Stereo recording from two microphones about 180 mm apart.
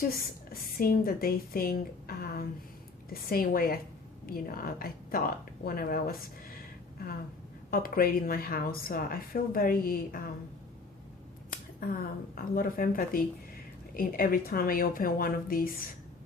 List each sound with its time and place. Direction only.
0.1 s a woman's voice: 55° left (ahead or behind)
7.7 s a woman's voice: 55° left (ahead or behind)
11.8 s a woman's voice: 55° left (ahead or behind)